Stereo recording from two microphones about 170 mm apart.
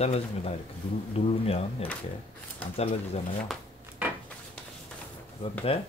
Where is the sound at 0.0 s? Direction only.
40° left (ahead or behind).